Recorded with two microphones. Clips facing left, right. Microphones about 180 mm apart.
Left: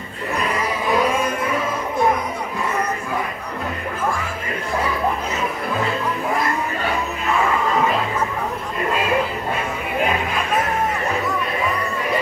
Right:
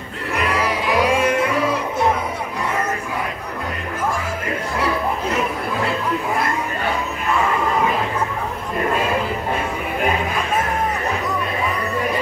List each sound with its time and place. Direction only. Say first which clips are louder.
0.5 s music: right 1 dB; 80° right